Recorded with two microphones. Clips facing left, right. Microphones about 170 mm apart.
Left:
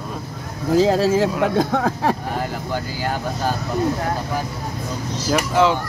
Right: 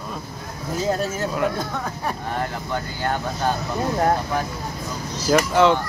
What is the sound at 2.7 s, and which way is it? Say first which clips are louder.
Speech: even; 5° left (ahead or behind).